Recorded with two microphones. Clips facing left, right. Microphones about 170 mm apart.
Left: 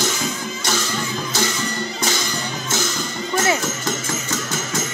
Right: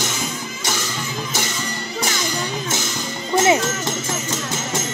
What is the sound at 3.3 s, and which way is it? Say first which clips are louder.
Music: right 4 dB; 20° right (ahead or behind).